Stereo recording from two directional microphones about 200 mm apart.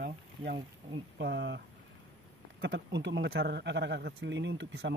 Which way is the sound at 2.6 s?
60° right (ahead or behind).